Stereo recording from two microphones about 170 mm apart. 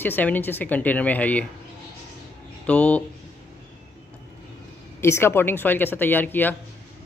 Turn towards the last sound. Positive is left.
turn(degrees=10)  # may be behind; listen again after turning